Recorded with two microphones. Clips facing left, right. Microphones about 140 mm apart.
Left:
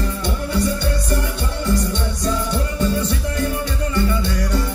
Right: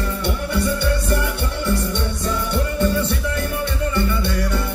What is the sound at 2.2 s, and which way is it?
Music, 60° right (ahead or behind).